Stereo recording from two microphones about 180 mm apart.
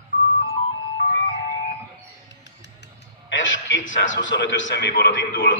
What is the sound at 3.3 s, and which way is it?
A man's voice, 90° left.